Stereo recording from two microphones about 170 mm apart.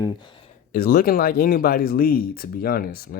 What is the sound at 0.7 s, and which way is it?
Speech, 60° left (ahead or behind).